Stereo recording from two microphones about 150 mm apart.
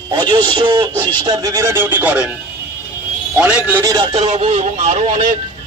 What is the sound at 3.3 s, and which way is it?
Speech, 10° right (ahead or behind).